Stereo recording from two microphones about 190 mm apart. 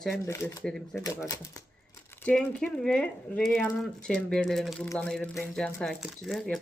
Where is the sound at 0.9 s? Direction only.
15° left (ahead or behind).